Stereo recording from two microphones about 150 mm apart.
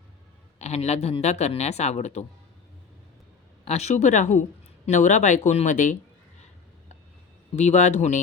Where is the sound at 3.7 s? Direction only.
50° left (ahead or behind).